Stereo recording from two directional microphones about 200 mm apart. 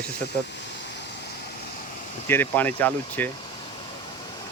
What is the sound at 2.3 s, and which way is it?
Speech, 10° left (ahead or behind).